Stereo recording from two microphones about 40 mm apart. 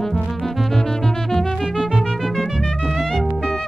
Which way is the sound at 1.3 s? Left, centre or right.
Centre.